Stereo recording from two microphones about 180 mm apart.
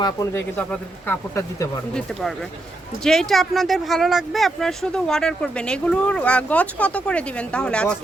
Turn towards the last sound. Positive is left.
turn(degrees=5)  # may be behind; listen again after turning